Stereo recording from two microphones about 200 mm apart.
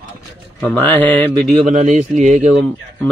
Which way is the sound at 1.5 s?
40° right (ahead or behind).